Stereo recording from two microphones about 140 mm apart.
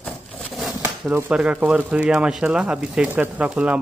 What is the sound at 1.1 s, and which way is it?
Speech, 10° right (ahead or behind).